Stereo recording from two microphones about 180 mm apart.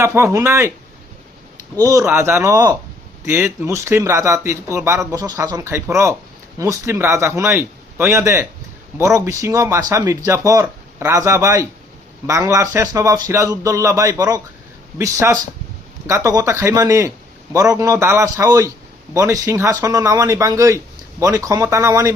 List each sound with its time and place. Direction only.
0.0 s speech: 15° right (ahead or behind)
1.8 s speech: 20° right (ahead or behind)